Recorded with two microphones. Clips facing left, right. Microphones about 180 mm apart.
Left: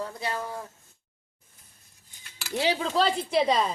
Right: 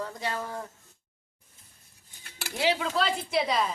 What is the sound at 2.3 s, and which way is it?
Cutlery, 55° right (ahead or behind).